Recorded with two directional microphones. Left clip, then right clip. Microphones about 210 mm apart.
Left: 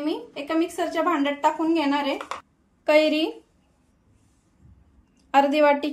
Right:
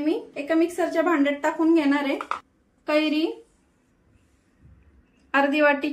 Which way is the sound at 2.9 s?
45° left (ahead or behind).